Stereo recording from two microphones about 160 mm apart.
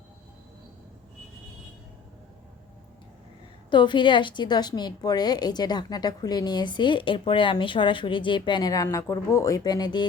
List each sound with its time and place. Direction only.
3.7 s a woman's voice: 30° left (ahead or behind)